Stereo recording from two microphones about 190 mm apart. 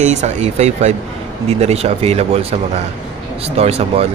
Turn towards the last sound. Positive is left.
turn(degrees=-35)  # may be behind; listen again after turning